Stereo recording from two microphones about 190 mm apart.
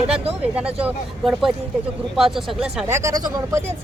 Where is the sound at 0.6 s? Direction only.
5° right (ahead or behind).